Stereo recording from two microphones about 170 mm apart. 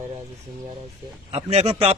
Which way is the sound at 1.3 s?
40° right (ahead or behind).